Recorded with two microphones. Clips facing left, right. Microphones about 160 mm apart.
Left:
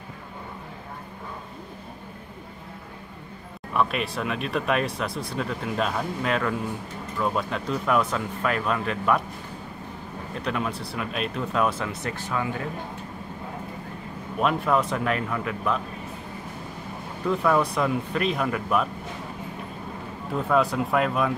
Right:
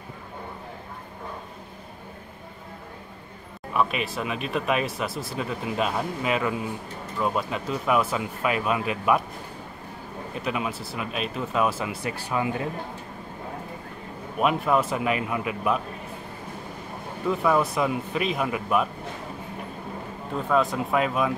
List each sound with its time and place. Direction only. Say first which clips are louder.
3.7 s speech: even; centre (ahead or behind)
10.4 s speech: left 1 dB; 5° right (ahead or behind)
12.3 s speech: right 2 dB; 15° right (ahead or behind)
14.4 s speech: even; 5° right (ahead or behind)
17.3 s speech: even; 5° right (ahead or behind)
20.4 s speech: left 1 dB; centre (ahead or behind)